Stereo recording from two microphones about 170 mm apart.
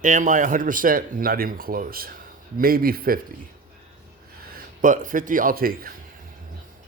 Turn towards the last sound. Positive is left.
turn(degrees=-60)  # may be behind; listen again after turning